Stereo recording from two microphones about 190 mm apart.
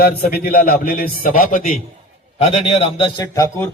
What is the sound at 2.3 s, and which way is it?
A man's voice, 30° left (ahead or behind).